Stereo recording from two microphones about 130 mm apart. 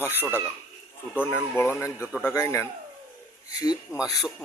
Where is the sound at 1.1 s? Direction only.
15° left (ahead or behind).